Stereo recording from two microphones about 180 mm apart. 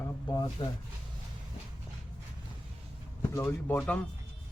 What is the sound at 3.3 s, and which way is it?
Speech, 10° left (ahead or behind).